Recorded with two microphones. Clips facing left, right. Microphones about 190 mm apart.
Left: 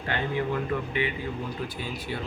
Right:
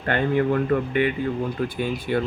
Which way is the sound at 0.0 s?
55° right (ahead or behind).